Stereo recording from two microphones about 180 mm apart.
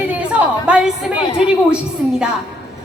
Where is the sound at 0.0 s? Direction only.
10° right (ahead or behind).